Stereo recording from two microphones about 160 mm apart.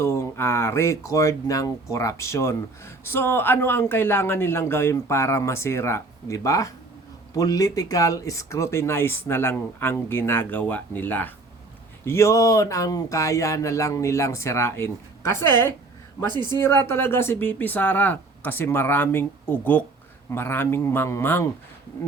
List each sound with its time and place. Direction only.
0.0 s speech: 15° left (ahead or behind)
16.3 s speech: 25° right (ahead or behind)
16.6 s speech: 15° left (ahead or behind)